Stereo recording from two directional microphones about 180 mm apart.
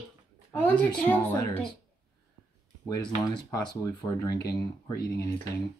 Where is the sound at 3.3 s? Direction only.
20° left (ahead or behind).